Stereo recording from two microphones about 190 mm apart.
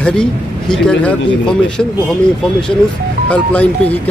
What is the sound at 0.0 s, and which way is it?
Speech, 5° left (ahead or behind).